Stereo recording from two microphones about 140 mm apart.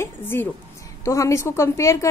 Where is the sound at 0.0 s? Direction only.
15° left (ahead or behind).